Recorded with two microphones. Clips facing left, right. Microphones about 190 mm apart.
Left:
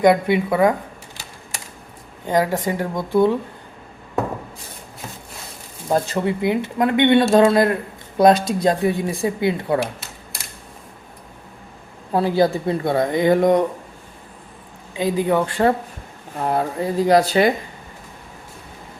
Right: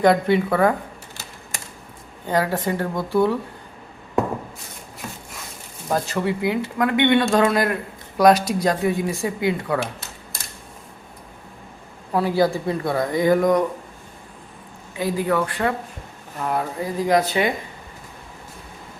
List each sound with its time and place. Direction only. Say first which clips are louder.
0.0 s speech: left 1 dB; 15° left (ahead or behind)
2.2 s a woman's voice: left 2 dB; 15° left (ahead or behind)
5.9 s speech: left 3 dB; 20° left (ahead or behind)
12.1 s speech: left 2 dB; 25° left (ahead or behind)
14.9 s speech: left 3 dB; 20° left (ahead or behind)